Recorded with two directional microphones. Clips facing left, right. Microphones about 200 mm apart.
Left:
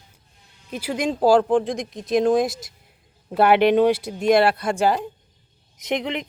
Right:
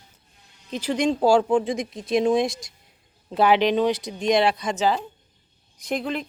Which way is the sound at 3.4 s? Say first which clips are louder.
Left 3 dB; 60° left (ahead or behind).